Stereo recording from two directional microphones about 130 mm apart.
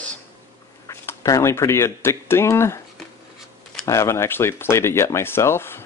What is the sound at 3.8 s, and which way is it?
Speech, 20° left (ahead or behind).